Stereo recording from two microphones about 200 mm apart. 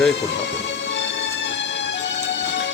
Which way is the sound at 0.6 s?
60° left (ahead or behind).